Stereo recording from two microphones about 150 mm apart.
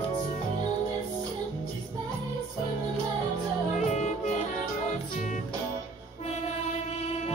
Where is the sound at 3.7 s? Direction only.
50° left (ahead or behind).